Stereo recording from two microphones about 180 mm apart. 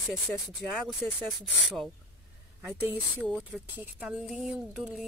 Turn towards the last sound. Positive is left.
turn(degrees=-5)  # may be behind; listen again after turning